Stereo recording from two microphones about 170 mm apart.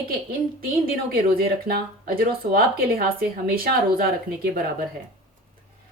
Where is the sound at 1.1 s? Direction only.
60° right (ahead or behind).